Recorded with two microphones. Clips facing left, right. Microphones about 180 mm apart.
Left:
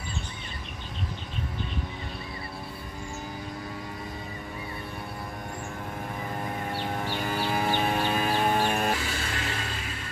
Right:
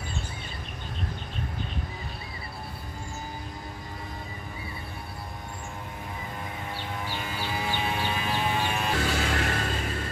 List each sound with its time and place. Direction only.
7.0 s music: 55° left (ahead or behind)
9.2 s music: 60° right (ahead or behind)